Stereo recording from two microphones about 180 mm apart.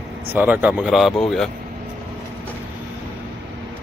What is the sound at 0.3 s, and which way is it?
Speech, 10° right (ahead or behind).